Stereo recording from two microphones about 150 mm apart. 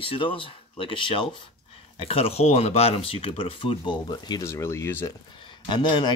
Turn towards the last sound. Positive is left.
turn(degrees=30)  # may be behind; listen again after turning